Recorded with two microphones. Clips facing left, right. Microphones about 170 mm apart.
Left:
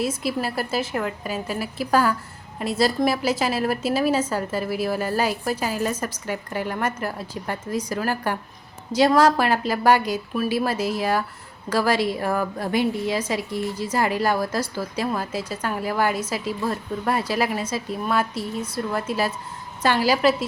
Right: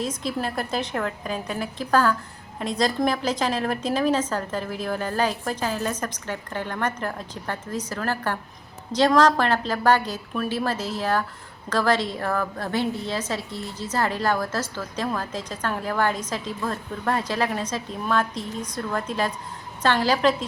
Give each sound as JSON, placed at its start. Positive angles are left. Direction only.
{"t": 0.0, "sound": "a woman's voice", "side_deg": 10}